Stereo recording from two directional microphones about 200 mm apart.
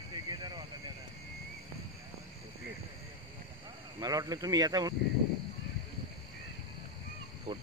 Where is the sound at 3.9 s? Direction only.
20° right (ahead or behind).